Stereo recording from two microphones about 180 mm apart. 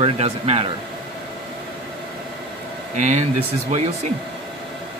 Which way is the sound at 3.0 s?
40° right (ahead or behind).